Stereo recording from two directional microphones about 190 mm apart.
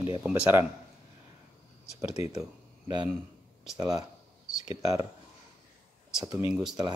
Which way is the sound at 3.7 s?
20° right (ahead or behind).